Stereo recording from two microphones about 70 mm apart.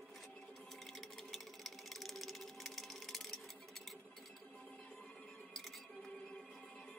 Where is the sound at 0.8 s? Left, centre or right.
Centre.